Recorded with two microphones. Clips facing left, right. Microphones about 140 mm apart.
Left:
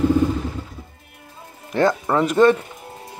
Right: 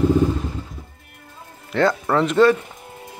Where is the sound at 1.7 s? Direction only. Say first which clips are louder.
Even; 20° left (ahead or behind).